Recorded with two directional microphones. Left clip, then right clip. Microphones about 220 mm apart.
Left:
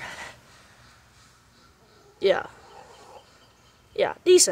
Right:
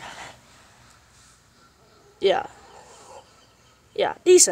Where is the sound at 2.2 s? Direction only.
10° right (ahead or behind).